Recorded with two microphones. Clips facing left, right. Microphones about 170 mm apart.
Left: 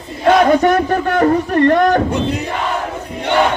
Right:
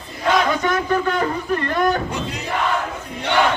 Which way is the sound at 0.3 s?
45° left (ahead or behind).